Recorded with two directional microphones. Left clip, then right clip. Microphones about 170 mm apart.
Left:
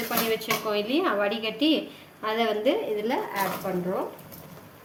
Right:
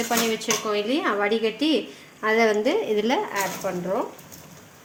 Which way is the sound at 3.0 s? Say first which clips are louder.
Right 4 dB; 50° right (ahead or behind).